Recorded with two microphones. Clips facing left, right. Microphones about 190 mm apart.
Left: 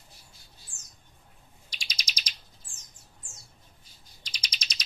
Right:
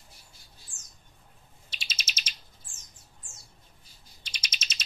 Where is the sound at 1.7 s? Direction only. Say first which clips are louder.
Right 1 dB; 5° right (ahead or behind).